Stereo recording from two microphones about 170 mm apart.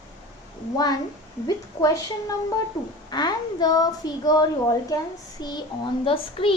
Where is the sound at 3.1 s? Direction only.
25° left (ahead or behind).